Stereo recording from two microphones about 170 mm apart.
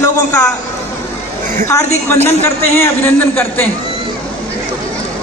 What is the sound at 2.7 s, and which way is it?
Speech, 15° left (ahead or behind).